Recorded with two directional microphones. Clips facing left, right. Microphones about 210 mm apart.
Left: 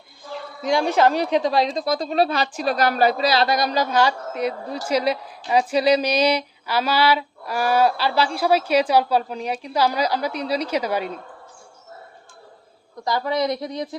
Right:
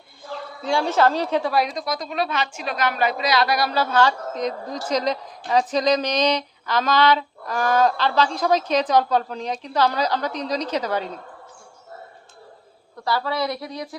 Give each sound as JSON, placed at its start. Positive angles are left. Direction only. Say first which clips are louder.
{"t": 0.6, "sound": "a woman's voice", "louder": "left 1 dB", "side_deg": 15}
{"t": 5.5, "sound": "a sound", "louder": "left 2 dB", "side_deg": 10}
{"t": 13.1, "sound": "a woman's voice", "louder": "left 2 dB", "side_deg": 20}